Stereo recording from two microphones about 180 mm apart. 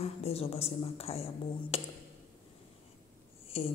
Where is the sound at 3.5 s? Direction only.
35° left (ahead or behind).